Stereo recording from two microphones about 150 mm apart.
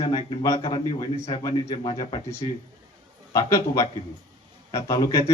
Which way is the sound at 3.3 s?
20° left (ahead or behind).